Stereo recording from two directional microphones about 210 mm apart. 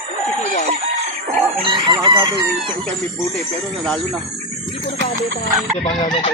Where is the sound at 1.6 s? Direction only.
20° right (ahead or behind).